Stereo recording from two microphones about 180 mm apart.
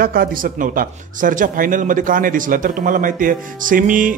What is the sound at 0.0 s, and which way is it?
Speech, 55° right (ahead or behind).